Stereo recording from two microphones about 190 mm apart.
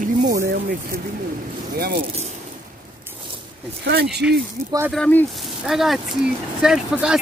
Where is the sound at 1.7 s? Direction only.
55° right (ahead or behind).